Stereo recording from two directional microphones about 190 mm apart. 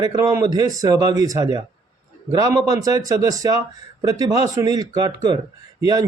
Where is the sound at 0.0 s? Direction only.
15° right (ahead or behind).